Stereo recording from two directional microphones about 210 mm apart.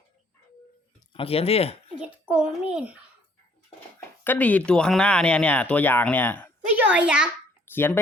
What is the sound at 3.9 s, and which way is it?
Speech, 10° left (ahead or behind).